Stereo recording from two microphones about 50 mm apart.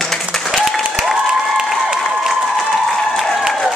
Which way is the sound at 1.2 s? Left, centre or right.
Centre.